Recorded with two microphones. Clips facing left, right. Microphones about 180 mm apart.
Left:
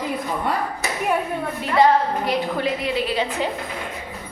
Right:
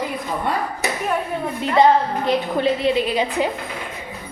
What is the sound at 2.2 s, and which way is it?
A woman's voice, 25° right (ahead or behind).